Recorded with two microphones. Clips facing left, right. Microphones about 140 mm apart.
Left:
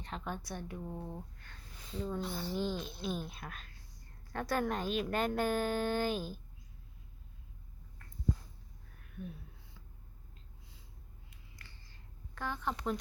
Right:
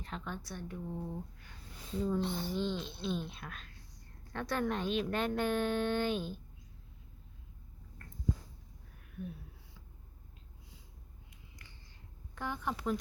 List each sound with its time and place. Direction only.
0.3 s speech: 10° left (ahead or behind)
2.0 s a woman's voice: centre (ahead or behind)
2.2 s a child's voice: 20° right (ahead or behind)
2.6 s a woman's voice: 10° left (ahead or behind)
9.2 s a woman's voice: 5° right (ahead or behind)
11.3 s a sound: 15° right (ahead or behind)
12.3 s a woman's voice: 15° right (ahead or behind)